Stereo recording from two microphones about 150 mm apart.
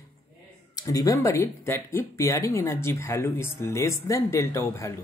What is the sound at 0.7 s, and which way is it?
Speech, 25° left (ahead or behind).